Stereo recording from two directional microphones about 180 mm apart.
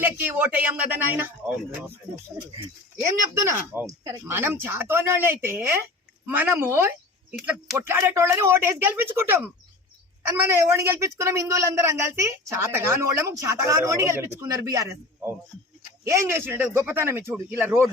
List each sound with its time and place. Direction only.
0.0 s a woman's voice: 10° right (ahead or behind)
3.7 s a woman's voice: 15° right (ahead or behind)